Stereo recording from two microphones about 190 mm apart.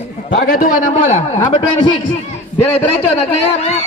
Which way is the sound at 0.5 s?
45° left (ahead or behind).